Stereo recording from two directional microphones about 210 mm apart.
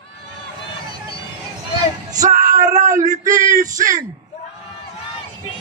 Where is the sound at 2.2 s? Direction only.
40° right (ahead or behind).